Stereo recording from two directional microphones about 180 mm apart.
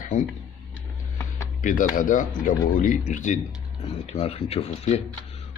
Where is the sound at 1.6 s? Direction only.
45° left (ahead or behind).